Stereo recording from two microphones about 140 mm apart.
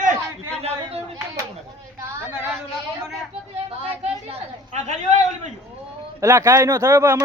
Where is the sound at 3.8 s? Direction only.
50° right (ahead or behind).